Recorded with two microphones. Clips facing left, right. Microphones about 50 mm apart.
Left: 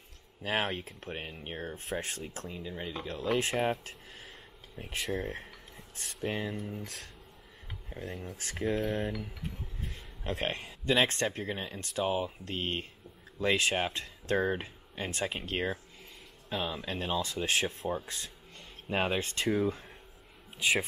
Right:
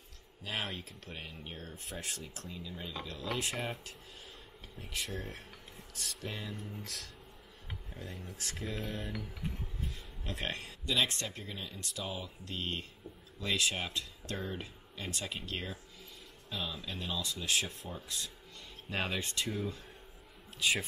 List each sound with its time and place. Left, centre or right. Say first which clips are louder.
0.4 s speech: left 7 dB; left
4.7 s speech: left 6 dB; left
7.9 s speech: left 7 dB; left
20.6 s speech: left 3 dB; left